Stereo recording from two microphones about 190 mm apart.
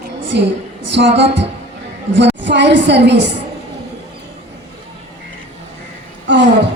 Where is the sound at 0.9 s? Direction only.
65° right (ahead or behind).